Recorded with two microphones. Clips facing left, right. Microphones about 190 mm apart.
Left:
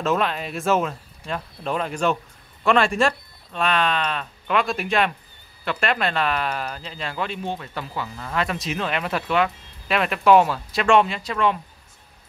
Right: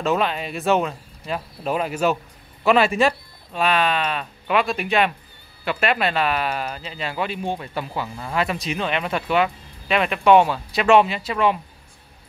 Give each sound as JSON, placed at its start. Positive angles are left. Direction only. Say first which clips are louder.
{"t": 0.0, "sound": "speech", "louder": "right 1 dB", "side_deg": 0}
{"t": 8.5, "sound": "speech", "louder": "right 1 dB", "side_deg": 0}